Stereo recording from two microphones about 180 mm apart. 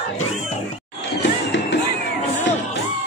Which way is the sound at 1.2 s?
80° left.